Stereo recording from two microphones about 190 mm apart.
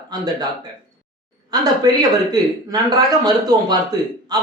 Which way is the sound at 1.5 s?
20° right (ahead or behind).